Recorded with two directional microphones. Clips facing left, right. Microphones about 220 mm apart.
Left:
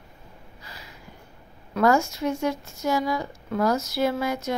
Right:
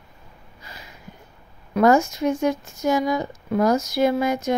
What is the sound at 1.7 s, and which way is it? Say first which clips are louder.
A woman's voice: right 4 dB; 20° right (ahead or behind).